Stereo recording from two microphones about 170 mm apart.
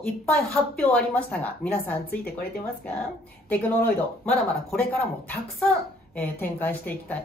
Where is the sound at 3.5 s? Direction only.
10° left (ahead or behind).